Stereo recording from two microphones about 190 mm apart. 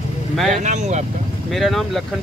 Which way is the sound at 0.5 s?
40° right (ahead or behind).